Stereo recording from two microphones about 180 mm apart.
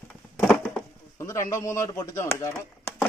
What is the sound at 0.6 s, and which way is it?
Speech, 15° left (ahead or behind).